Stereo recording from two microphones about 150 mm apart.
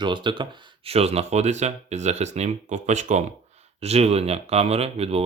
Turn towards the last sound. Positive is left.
turn(degrees=-40)  # may be behind; listen again after turning